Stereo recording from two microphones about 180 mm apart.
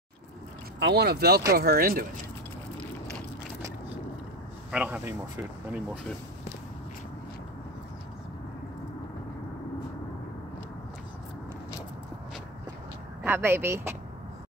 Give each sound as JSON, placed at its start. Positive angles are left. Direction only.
{"t": 0.7, "sound": "speech", "side_deg": -65}
{"t": 4.6, "sound": "speech", "side_deg": -5}
{"t": 13.2, "sound": "speech", "side_deg": -10}